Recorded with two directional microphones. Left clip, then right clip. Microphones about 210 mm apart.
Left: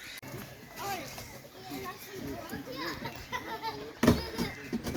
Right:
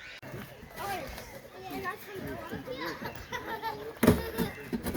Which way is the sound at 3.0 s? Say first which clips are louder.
Even; 15° right (ahead or behind).